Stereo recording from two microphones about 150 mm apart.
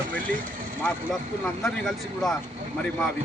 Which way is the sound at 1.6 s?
5° left (ahead or behind).